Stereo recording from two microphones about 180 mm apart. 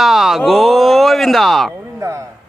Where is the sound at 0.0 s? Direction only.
Centre (ahead or behind).